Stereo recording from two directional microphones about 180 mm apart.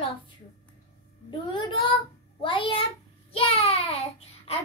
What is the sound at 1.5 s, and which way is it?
A child's voice, 25° left (ahead or behind).